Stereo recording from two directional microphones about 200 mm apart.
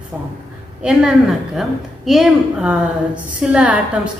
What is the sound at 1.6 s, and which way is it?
A woman's voice, centre (ahead or behind).